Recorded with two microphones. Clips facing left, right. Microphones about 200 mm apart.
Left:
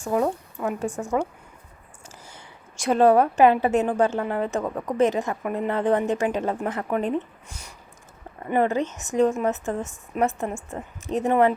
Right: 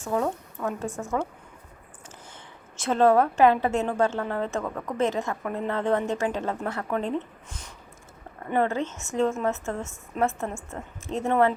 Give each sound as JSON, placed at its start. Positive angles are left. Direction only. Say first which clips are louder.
{"t": 0.0, "sound": "a woman's voice", "louder": "left 3 dB", "side_deg": 15}
{"t": 0.9, "sound": "a woman's voice", "louder": "left 3 dB", "side_deg": 0}
{"t": 2.3, "sound": "a woman's voice", "louder": "even", "side_deg": 15}